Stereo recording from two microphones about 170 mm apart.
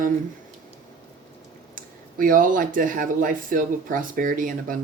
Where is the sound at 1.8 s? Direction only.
55° right (ahead or behind).